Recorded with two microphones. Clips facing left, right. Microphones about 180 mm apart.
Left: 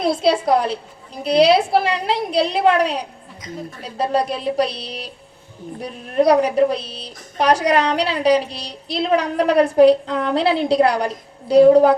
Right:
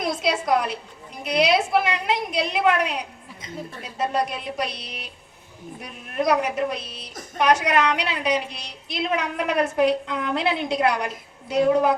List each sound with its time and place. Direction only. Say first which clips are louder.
0.0 s a woman's voice: left 7 dB; 30° left (ahead or behind)